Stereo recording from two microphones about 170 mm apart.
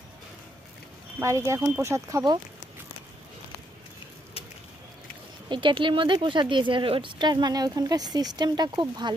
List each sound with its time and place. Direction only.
1.2 s speech: 15° right (ahead or behind)
5.5 s speech: 30° right (ahead or behind)